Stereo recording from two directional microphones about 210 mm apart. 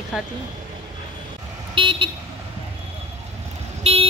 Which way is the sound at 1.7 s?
25° right (ahead or behind).